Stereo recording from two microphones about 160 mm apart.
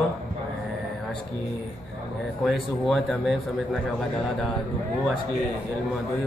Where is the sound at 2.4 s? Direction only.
Centre (ahead or behind).